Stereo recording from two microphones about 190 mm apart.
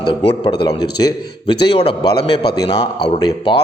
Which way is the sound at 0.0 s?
30° left (ahead or behind).